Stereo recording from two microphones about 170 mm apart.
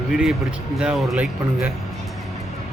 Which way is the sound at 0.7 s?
5° right (ahead or behind).